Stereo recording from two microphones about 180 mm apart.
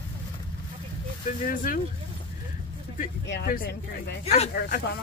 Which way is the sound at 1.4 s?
50° left (ahead or behind).